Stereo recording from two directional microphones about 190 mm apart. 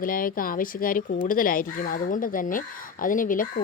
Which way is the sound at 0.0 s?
45° left (ahead or behind).